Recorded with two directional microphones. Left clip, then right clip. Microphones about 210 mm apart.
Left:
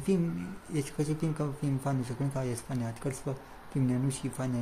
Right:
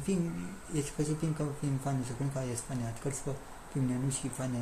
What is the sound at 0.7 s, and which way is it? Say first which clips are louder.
Speech: left 1 dB; 30° left (ahead or behind).